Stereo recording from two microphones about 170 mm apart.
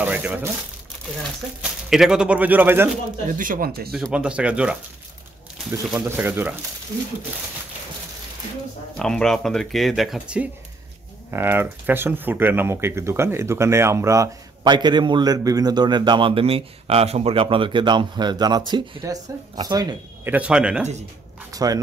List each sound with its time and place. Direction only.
0.0 s speech: 10° right (ahead or behind)
1.6 s speech: 5° right (ahead or behind)
3.3 s speech: 55° right (ahead or behind)
3.9 s speech: 5° right (ahead or behind)
5.9 s speech: 15° right (ahead or behind)
8.9 s speech: 5° left (ahead or behind); by 20.0 s 25° right (ahead or behind)
20.2 s speech: 5° right (ahead or behind)
21.5 s speech: 20° right (ahead or behind)